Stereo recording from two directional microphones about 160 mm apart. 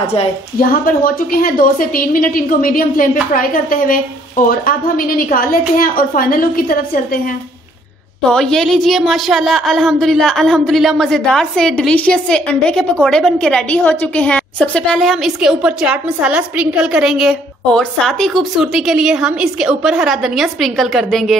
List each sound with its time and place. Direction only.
0.0 s a woman's voice: 40° left (ahead or behind)
0.6 s a woman's voice: 65° left (ahead or behind)
8.3 s a woman's voice: 5° left (ahead or behind)